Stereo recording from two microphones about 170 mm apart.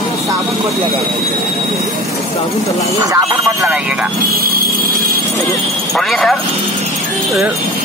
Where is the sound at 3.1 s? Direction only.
20° right (ahead or behind).